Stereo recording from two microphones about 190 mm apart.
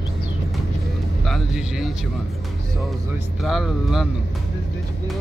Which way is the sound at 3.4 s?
Centre (ahead or behind).